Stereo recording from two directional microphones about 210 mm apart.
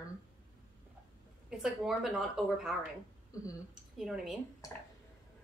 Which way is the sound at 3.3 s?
15° left (ahead or behind).